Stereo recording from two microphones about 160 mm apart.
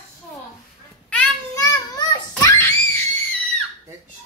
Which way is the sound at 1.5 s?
20° left (ahead or behind).